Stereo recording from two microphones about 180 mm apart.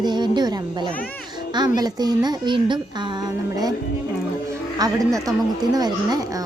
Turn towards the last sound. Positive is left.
turn(degrees=-20)  # may be behind; listen again after turning